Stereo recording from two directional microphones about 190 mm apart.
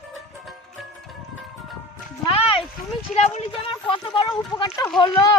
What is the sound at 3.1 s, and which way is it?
Speech, 35° left (ahead or behind).